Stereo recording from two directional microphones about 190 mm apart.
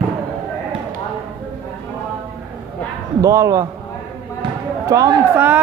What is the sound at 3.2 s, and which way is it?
Speech, 15° right (ahead or behind).